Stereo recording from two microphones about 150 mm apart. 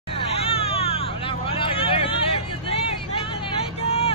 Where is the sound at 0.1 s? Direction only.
40° left (ahead or behind).